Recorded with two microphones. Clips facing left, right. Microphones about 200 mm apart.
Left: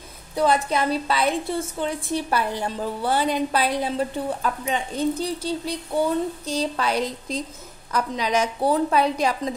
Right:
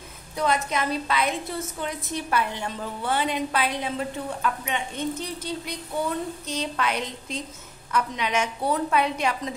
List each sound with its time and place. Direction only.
0.4 s a woman's voice: 35° left (ahead or behind)